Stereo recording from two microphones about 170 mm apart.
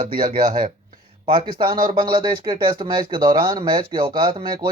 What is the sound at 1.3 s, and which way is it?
Speech, 30° right (ahead or behind).